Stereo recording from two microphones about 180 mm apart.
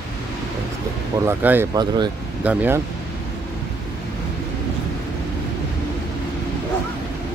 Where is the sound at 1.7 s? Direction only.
25° right (ahead or behind).